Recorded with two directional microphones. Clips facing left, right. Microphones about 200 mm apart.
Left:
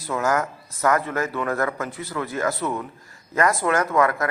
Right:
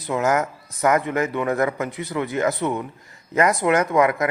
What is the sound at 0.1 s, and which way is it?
A man's voice, 20° right (ahead or behind).